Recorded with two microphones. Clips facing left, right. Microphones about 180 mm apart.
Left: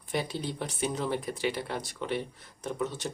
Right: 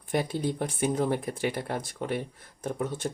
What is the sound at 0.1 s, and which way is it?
Speech, 50° right (ahead or behind).